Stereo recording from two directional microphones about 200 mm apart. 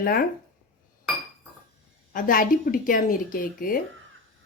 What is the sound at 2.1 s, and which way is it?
A woman's voice, 40° left (ahead or behind).